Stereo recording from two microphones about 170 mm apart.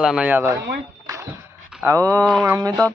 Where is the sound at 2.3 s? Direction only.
Centre (ahead or behind).